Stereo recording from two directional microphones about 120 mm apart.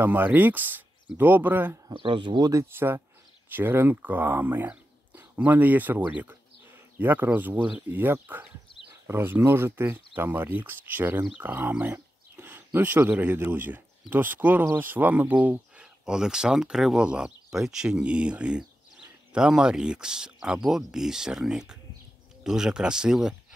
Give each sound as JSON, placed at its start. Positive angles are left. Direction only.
{"t": 0.0, "sound": "speech", "side_deg": -15}
{"t": 1.9, "sound": "speech", "side_deg": -45}
{"t": 2.5, "sound": "speech", "side_deg": -20}